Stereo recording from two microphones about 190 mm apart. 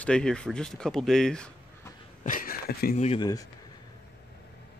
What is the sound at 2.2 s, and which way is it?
Speech, 45° left (ahead or behind).